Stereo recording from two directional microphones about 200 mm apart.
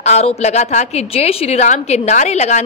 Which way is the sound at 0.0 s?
35° left (ahead or behind).